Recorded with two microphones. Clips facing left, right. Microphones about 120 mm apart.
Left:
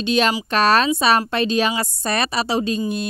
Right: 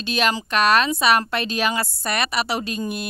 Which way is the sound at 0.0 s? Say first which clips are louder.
Left 4 dB; 25° left (ahead or behind).